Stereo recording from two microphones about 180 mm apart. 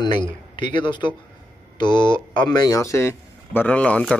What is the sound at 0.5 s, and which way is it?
Speech, 25° left (ahead or behind).